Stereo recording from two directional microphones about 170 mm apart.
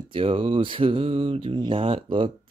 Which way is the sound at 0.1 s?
30° right (ahead or behind).